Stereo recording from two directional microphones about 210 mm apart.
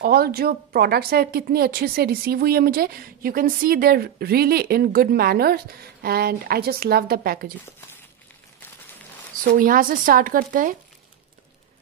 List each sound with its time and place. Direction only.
0.0 s speech: 45° right (ahead or behind)
9.4 s speech: 40° right (ahead or behind)